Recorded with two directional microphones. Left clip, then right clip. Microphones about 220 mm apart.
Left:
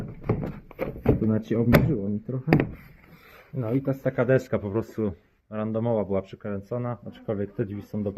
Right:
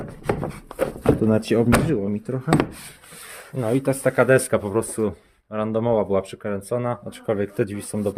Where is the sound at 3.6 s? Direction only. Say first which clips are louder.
Right 6 dB; 20° right (ahead or behind).